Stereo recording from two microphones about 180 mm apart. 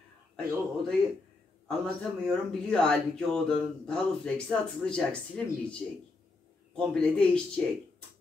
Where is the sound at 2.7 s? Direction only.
5° left (ahead or behind).